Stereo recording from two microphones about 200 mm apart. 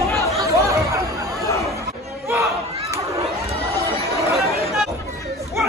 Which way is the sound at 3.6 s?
15° right (ahead or behind).